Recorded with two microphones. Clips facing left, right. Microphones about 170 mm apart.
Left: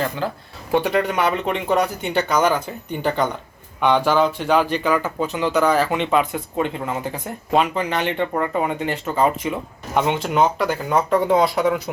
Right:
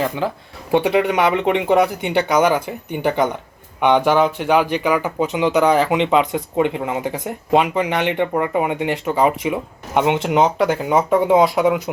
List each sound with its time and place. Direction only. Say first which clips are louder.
0.7 s speech: right 3 dB; 15° right (ahead or behind)